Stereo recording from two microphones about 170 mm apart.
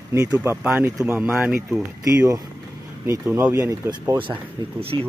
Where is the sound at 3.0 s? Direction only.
15° right (ahead or behind).